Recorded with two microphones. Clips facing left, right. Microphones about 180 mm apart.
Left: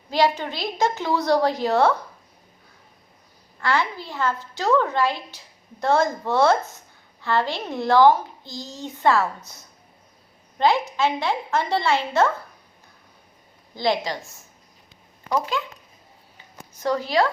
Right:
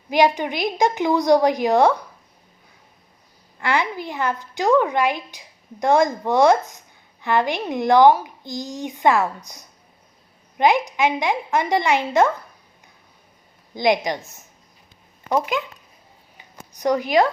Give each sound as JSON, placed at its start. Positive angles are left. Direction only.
{"t": 0.1, "sound": "a child's voice", "side_deg": -15}
{"t": 3.6, "sound": "a child's voice", "side_deg": -15}
{"t": 13.7, "sound": "a child's voice", "side_deg": -15}
{"t": 16.7, "sound": "a child's voice", "side_deg": -15}